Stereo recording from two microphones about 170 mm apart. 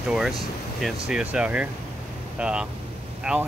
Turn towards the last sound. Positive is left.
turn(degrees=-5)  # may be behind; listen again after turning